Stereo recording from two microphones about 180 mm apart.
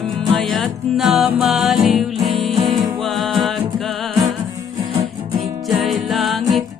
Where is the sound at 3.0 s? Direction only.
Centre (ahead or behind).